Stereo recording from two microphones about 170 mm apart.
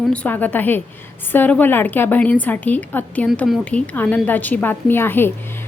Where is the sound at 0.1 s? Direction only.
10° left (ahead or behind).